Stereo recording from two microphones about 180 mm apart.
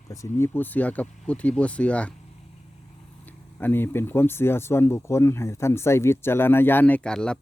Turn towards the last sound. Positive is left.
turn(degrees=5)  # may be behind; listen again after turning